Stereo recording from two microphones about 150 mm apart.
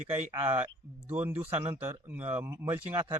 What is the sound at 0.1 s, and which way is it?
Speech, 15° right (ahead or behind).